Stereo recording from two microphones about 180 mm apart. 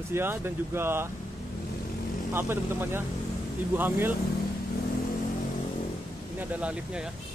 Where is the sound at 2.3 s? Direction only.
10° right (ahead or behind).